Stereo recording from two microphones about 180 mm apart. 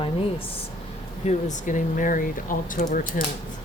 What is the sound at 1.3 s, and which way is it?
Speech, 45° left (ahead or behind).